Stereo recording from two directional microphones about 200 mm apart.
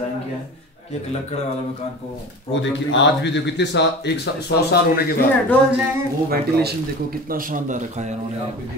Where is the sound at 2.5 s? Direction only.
65° left (ahead or behind).